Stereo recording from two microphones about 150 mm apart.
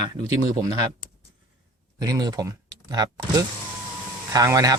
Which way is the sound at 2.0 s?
25° right (ahead or behind).